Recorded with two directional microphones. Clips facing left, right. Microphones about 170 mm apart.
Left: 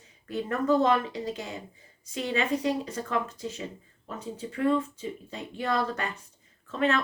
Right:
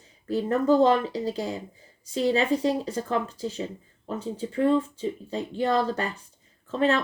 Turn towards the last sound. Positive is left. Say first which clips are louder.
# right 3 dB
turn(degrees=-30)  # may be behind; listen again after turning